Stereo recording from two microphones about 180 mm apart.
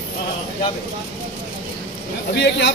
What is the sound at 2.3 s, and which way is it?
Speech, 70° left (ahead or behind).